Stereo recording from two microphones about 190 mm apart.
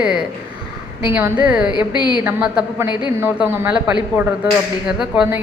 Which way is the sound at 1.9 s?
25° left (ahead or behind).